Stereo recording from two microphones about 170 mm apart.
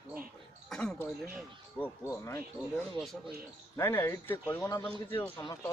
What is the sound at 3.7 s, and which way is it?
Speech, 15° left (ahead or behind).